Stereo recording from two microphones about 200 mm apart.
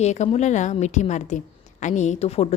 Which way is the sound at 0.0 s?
35° left (ahead or behind).